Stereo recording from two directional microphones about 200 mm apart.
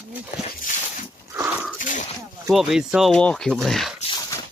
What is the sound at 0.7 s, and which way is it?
Dog, 40° left (ahead or behind).